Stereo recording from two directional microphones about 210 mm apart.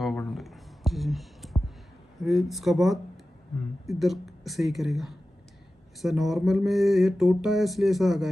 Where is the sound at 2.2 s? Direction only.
Centre (ahead or behind).